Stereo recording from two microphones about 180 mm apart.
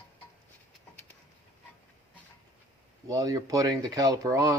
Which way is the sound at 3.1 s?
20° right (ahead or behind).